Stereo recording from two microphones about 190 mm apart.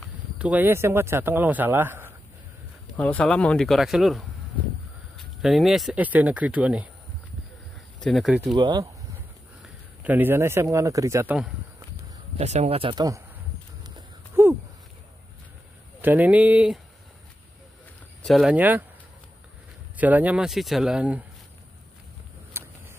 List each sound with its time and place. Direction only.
0.4 s speech: 10° right (ahead or behind)
3.0 s speech: 5° left (ahead or behind)
8.0 s speech: centre (ahead or behind)
8.5 s speech: 25° right (ahead or behind)
9.6 s speech: 10° right (ahead or behind)
12.4 s speech: 35° right (ahead or behind)
13.8 s a sound: 15° right (ahead or behind)
16.0 s speech: 10° right (ahead or behind)
18.2 s speech: centre (ahead or behind)
20.0 s speech: 10° right (ahead or behind)
22.5 s a sound: 10° right (ahead or behind)